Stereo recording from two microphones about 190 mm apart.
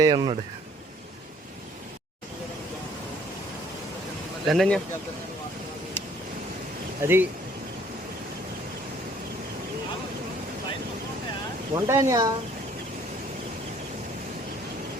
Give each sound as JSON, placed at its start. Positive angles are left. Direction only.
{"t": 0.0, "sound": "speech", "side_deg": -20}
{"t": 4.4, "sound": "speech", "side_deg": 0}
{"t": 7.0, "sound": "speech", "side_deg": -10}
{"t": 11.7, "sound": "speech", "side_deg": -15}